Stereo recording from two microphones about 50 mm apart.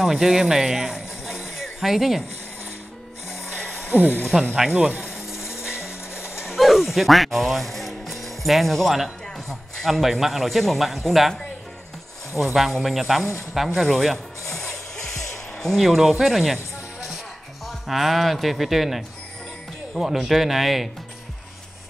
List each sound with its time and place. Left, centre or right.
0.0 s a sound: centre
3.5 s music: left
3.9 s speech: right
5.3 s music: centre
5.8 s music: left
6.4 s a man's voice: centre
12.4 s a man's voice: centre
13.7 s rub: centre
15.6 s a man's voice: centre
17.6 s a man's voice: centre